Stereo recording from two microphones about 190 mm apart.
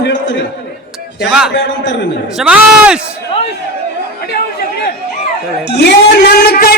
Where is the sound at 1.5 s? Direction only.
70° left (ahead or behind).